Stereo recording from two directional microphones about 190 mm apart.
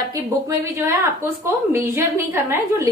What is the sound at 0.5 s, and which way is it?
A woman's voice, 15° right (ahead or behind).